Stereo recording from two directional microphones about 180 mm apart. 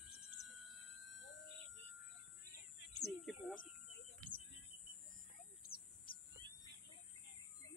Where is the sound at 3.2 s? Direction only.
Centre (ahead or behind).